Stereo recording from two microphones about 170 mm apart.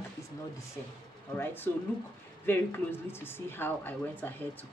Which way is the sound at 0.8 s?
15° left (ahead or behind).